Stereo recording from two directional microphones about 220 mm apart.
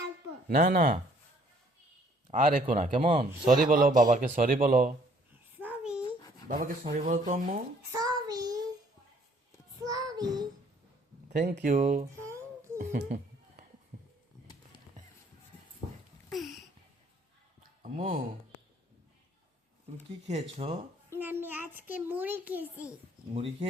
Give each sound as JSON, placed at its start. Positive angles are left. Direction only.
{"t": 0.4, "sound": "a man's voice", "side_deg": -40}
{"t": 2.3, "sound": "a man's voice", "side_deg": -35}
{"t": 5.5, "sound": "babbling", "side_deg": -5}
{"t": 6.5, "sound": "a man's voice", "side_deg": -40}
{"t": 7.9, "sound": "child singing", "side_deg": -15}
{"t": 9.8, "sound": "child singing", "side_deg": -15}
{"t": 11.3, "sound": "a man's voice", "side_deg": -30}
{"t": 12.1, "sound": "child singing", "side_deg": -10}
{"t": 16.3, "sound": "a sound", "side_deg": 0}
{"t": 17.6, "sound": "a sound", "side_deg": -30}
{"t": 20.2, "sound": "a man's voice", "side_deg": -30}
{"t": 21.1, "sound": "a child's voice", "side_deg": -10}
{"t": 23.3, "sound": "speech", "side_deg": -25}